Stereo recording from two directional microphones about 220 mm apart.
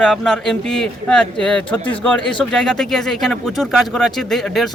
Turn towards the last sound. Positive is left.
turn(degrees=0)  # may be behind; listen again after turning